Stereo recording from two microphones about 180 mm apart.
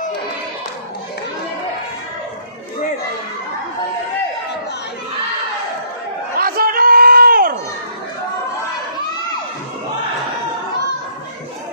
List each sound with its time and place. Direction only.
6.3 s crowd: 55° right (ahead or behind)